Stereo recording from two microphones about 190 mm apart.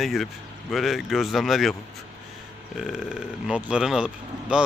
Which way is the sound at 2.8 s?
Centre (ahead or behind).